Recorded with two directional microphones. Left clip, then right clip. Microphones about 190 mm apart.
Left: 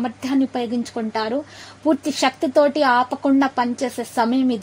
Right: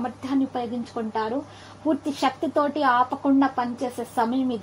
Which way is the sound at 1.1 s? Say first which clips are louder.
Left 3 dB; 25° left (ahead or behind).